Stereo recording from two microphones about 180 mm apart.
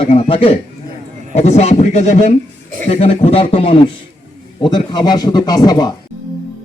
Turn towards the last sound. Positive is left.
turn(degrees=20)  # may be behind; listen again after turning